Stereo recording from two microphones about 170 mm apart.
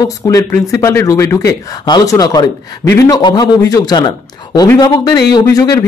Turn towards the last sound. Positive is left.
turn(degrees=25)  # may be behind; listen again after turning